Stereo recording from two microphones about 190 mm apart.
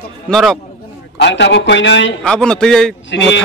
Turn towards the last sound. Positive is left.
turn(degrees=70)  # may be behind; listen again after turning